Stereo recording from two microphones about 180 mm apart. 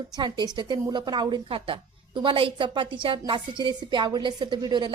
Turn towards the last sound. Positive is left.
turn(degrees=-25)  # may be behind; listen again after turning